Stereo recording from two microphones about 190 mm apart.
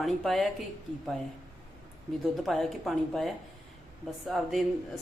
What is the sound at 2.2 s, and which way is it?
A man's voice, centre (ahead or behind).